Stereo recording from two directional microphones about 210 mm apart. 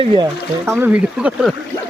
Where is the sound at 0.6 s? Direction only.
10° right (ahead or behind).